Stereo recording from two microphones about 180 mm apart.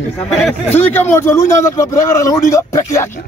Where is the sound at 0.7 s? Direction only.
10° left (ahead or behind).